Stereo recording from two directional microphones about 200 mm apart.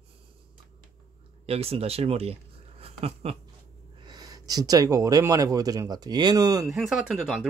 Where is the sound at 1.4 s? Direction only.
30° right (ahead or behind).